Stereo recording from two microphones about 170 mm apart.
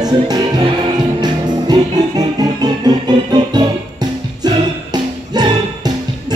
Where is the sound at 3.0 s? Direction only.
25° right (ahead or behind).